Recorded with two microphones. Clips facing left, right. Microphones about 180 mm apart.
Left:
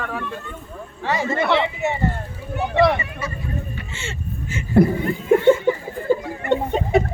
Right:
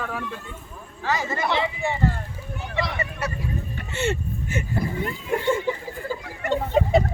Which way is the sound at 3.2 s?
70° right (ahead or behind).